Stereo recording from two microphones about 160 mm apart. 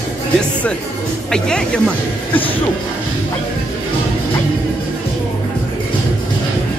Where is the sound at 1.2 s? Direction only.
5° left (ahead or behind).